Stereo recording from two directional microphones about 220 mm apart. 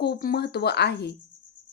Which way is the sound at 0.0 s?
45° left (ahead or behind).